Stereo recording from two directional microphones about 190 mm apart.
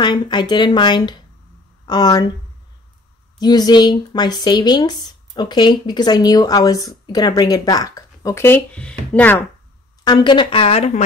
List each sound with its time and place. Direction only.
0.0 s speech: 25° left (ahead or behind)
3.3 s speech: 20° left (ahead or behind)
10.0 s speech: 25° left (ahead or behind)